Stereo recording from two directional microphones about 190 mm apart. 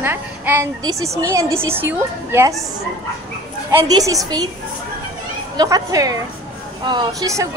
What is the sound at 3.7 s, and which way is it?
Speech, 20° right (ahead or behind).